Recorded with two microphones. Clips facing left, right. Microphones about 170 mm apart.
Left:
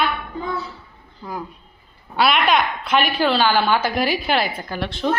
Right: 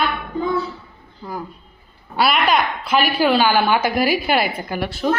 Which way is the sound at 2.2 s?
5° right (ahead or behind).